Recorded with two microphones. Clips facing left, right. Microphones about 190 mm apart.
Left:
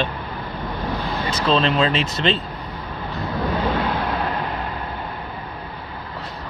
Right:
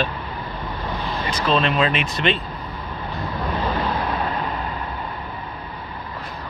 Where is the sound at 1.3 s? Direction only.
30° left (ahead or behind).